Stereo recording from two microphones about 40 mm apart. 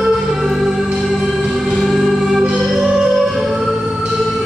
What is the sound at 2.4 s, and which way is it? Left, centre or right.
Music, right.